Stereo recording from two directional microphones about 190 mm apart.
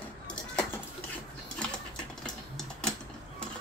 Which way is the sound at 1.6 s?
5° left (ahead or behind).